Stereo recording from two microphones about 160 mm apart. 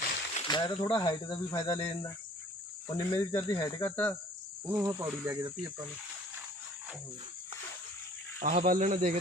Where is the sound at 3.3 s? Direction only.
15° left (ahead or behind).